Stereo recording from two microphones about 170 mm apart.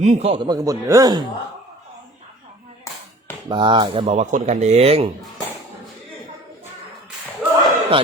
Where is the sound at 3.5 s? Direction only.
30° right (ahead or behind).